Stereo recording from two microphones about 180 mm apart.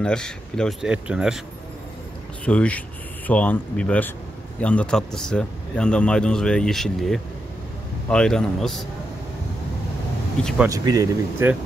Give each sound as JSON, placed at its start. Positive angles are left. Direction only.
{"t": 0.0, "sound": "speech", "side_deg": 5}
{"t": 2.4, "sound": "speech", "side_deg": 5}
{"t": 10.7, "sound": "speech", "side_deg": -20}